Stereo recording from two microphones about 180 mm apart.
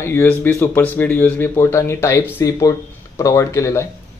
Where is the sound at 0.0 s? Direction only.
15° left (ahead or behind).